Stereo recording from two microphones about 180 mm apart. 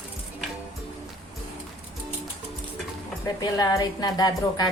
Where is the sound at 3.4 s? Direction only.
20° left (ahead or behind).